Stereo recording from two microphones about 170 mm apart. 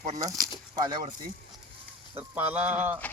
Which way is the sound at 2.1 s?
10° right (ahead or behind).